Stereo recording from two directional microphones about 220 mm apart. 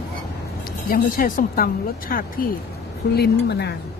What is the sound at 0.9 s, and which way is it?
Speech, 40° left (ahead or behind).